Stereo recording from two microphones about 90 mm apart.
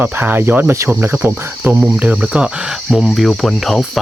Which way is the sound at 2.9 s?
Centre (ahead or behind).